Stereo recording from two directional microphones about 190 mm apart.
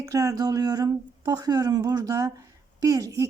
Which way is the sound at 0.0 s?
15° right (ahead or behind).